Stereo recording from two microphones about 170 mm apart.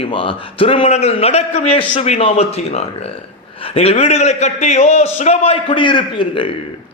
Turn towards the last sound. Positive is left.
turn(degrees=30)  # may be behind; listen again after turning